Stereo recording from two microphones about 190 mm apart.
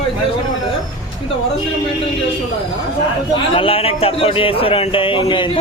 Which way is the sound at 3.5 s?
30° left (ahead or behind).